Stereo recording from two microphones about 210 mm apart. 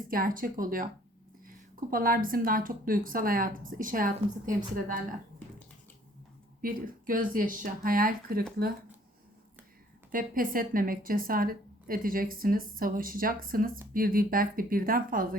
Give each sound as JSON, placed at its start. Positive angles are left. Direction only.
{"t": 0.1, "sound": "a woman's voice", "side_deg": -40}
{"t": 6.6, "sound": "speech", "side_deg": -45}
{"t": 10.1, "sound": "speech", "side_deg": -40}